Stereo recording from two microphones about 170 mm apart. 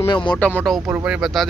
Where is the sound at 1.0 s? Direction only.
5° right (ahead or behind).